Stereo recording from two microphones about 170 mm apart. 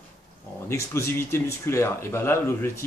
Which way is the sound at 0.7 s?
15° left (ahead or behind).